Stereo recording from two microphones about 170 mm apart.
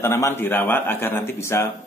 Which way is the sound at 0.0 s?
15° left (ahead or behind).